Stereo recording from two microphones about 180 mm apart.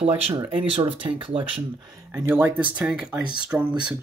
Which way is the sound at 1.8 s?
15° right (ahead or behind).